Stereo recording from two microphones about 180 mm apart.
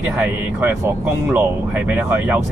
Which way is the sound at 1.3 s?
10° right (ahead or behind).